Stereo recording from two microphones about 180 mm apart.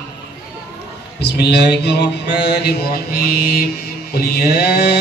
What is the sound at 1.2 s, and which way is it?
Mantra, 65° left (ahead or behind).